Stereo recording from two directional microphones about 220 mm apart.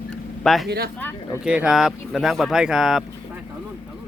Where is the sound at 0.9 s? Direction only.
10° left (ahead or behind).